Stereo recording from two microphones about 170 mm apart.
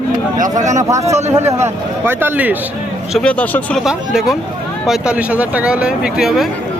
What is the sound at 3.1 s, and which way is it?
Speech, 5° left (ahead or behind).